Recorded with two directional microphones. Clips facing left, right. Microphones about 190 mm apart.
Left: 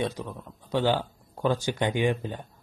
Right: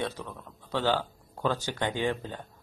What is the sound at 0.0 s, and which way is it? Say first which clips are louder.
Speech: left 4 dB; 15° left (ahead or behind).